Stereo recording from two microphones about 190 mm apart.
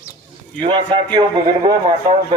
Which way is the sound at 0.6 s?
25° right (ahead or behind).